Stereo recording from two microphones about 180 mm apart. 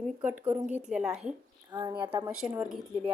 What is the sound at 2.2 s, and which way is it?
Speech, 5° right (ahead or behind).